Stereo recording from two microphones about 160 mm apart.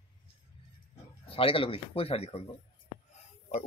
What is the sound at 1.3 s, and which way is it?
Speech, 35° left (ahead or behind).